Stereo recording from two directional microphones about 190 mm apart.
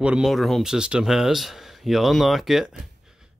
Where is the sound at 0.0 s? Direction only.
5° right (ahead or behind).